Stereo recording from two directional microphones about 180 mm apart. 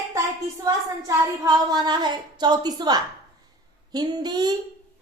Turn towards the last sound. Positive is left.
turn(degrees=-25)  # may be behind; listen again after turning